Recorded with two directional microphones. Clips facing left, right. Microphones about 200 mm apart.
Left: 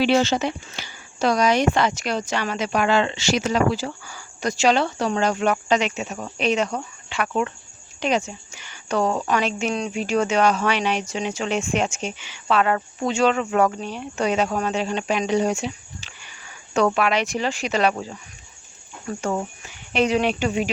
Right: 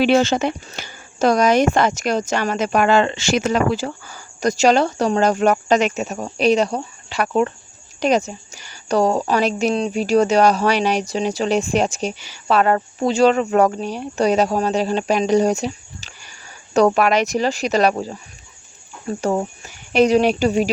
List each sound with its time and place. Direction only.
0.0 s a woman's voice: 50° right (ahead or behind)